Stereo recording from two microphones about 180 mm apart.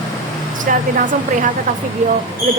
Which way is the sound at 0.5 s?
45° right (ahead or behind).